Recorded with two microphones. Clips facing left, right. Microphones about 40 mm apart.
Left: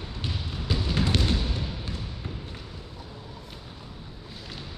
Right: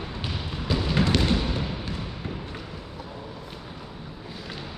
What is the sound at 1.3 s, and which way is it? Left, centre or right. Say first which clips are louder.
Fireworks: right 4 dB; right.